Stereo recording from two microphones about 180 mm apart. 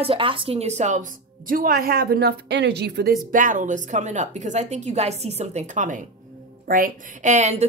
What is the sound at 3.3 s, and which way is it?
A woman's voice, 45° right (ahead or behind).